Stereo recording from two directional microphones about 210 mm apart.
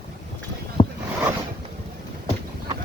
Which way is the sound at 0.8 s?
20° left (ahead or behind).